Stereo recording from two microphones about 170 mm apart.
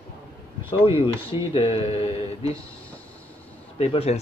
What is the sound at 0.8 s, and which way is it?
Speech, 30° left (ahead or behind).